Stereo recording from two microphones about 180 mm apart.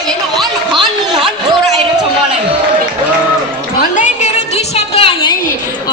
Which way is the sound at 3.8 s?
45° left (ahead or behind).